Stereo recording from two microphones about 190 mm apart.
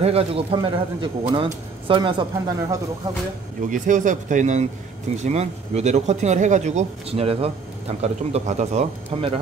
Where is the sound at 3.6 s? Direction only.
40° right (ahead or behind).